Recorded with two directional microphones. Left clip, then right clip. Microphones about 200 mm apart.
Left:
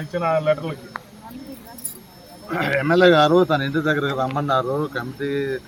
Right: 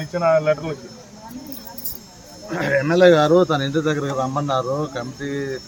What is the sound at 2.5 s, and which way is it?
A man's voice, 15° right (ahead or behind).